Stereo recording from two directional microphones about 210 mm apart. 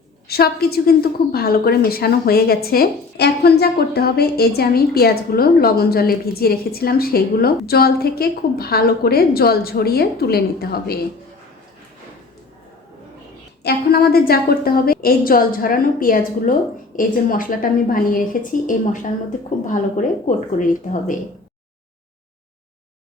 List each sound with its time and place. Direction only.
0.3 s a woman's voice: 50° left (ahead or behind)
13.6 s a woman's voice: 50° left (ahead or behind)